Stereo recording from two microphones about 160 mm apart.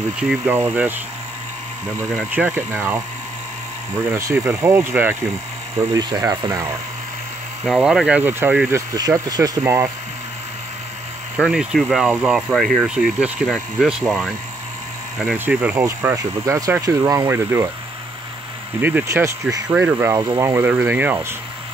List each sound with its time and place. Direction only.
0.2 s speech: 10° right (ahead or behind)
2.0 s speech: 10° right (ahead or behind)
4.1 s speech: 15° right (ahead or behind)
7.6 s speech: centre (ahead or behind); by 9.8 s 20° right (ahead or behind)
11.3 s speech: centre (ahead or behind)
18.8 s speech: 10° right (ahead or behind)